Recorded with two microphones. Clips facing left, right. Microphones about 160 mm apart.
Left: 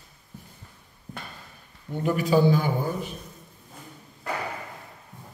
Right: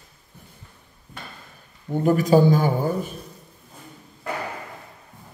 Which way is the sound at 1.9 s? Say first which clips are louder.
Right 5 dB; 45° right (ahead or behind).